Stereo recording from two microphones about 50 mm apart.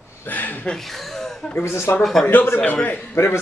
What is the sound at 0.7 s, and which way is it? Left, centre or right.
Speech, centre.